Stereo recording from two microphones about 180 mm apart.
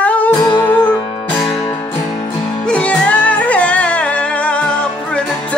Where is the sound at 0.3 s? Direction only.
25° left (ahead or behind).